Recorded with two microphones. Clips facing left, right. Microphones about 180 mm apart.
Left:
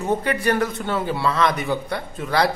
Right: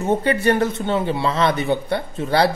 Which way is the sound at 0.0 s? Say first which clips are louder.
Right 3 dB; 25° right (ahead or behind).